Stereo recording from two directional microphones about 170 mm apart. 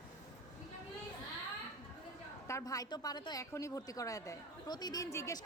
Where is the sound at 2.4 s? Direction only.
20° left (ahead or behind).